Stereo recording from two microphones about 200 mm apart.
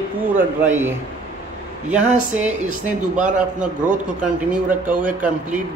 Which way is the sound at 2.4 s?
35° right (ahead or behind).